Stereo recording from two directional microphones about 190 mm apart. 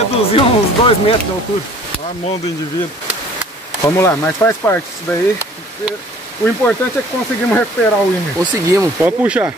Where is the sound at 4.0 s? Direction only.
15° left (ahead or behind).